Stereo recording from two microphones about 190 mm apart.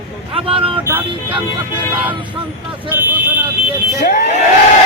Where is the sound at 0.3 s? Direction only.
30° right (ahead or behind).